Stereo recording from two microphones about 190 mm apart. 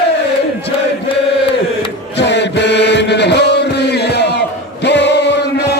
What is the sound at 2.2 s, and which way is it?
Chant, 65° left (ahead or behind).